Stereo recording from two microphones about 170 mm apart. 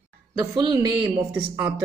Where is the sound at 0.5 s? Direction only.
25° right (ahead or behind).